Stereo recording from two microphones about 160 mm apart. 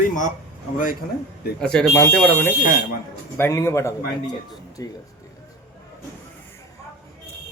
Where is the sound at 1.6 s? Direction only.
5° left (ahead or behind); by 4.9 s 20° left (ahead or behind).